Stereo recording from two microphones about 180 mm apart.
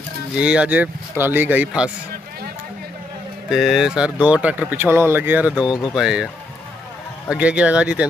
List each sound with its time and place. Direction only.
0.4 s speech: 5° right (ahead or behind)
3.4 s speech: centre (ahead or behind)
5.6 s speech: 20° left (ahead or behind)
5.9 s speech: 5° right (ahead or behind)